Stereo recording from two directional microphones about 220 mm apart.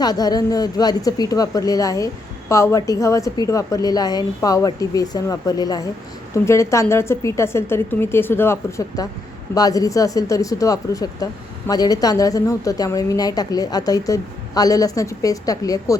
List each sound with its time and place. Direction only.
0.0 s a woman's voice: 20° left (ahead or behind)